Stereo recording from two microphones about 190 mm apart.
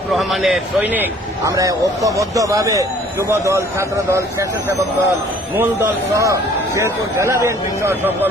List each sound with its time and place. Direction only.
0.1 s a man's voice: centre (ahead or behind)
1.5 s speech: 15° right (ahead or behind)
5.5 s speech: 15° right (ahead or behind)